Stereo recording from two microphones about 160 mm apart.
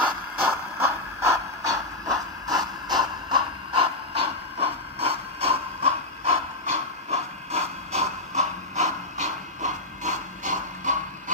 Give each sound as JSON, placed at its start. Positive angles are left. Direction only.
{"t": 0.0, "sound": "vehicle", "side_deg": -15}